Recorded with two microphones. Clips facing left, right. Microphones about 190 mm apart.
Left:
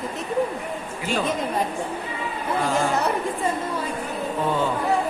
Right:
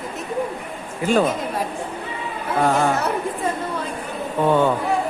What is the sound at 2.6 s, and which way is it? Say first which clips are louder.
Speech: right 5 dB; 60° right (ahead or behind).